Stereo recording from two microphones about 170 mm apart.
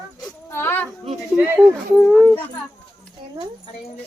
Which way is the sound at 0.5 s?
15° left (ahead or behind).